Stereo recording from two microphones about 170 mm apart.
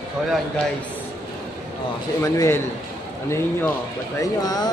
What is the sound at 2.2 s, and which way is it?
Speech, 15° left (ahead or behind).